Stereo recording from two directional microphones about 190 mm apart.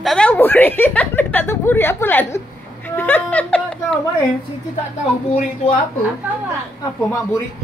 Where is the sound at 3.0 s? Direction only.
10° left (ahead or behind).